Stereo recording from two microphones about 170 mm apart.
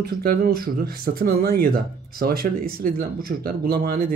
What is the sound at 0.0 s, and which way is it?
Speech, 65° right (ahead or behind).